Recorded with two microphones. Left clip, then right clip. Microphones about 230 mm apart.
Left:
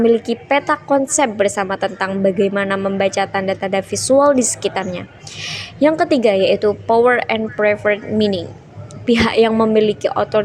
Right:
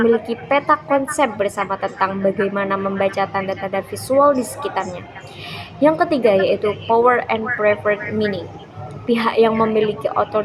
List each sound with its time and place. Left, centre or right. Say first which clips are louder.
0.0 s a woman's voice: left 2 dB; left